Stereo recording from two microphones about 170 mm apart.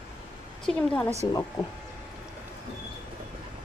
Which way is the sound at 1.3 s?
20° left (ahead or behind).